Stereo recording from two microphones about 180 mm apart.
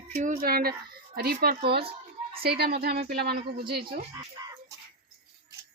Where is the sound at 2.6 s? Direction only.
60° right (ahead or behind).